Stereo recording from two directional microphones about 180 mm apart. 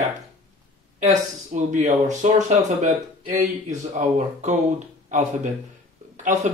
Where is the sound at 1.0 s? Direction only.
40° right (ahead or behind).